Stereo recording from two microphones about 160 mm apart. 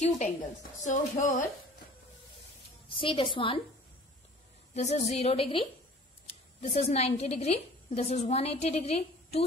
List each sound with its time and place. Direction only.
0.8 s a woman's voice: 50° left (ahead or behind)
2.9 s a woman's voice: 30° left (ahead or behind)
4.7 s a woman's voice: 45° left (ahead or behind)
6.6 s a woman's voice: 45° left (ahead or behind)